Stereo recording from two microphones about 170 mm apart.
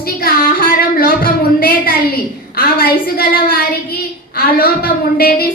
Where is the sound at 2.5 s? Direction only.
60° left (ahead or behind).